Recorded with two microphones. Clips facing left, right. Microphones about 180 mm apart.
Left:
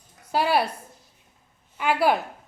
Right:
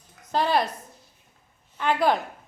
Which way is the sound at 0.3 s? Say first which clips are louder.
Left 1 dB; 10° left (ahead or behind).